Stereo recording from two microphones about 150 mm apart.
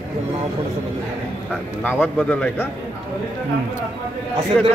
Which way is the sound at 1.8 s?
10° left (ahead or behind).